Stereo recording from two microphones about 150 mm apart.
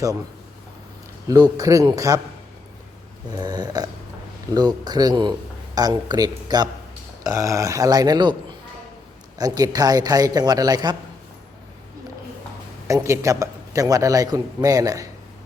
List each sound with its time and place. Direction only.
1.3 s a man's voice: 25° right (ahead or behind)
3.3 s a man's voice: 25° right (ahead or behind)
9.4 s a man's voice: 25° right (ahead or behind)
12.9 s a man's voice: 20° right (ahead or behind)